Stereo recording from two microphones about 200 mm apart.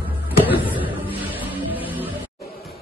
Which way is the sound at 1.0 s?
10° right (ahead or behind).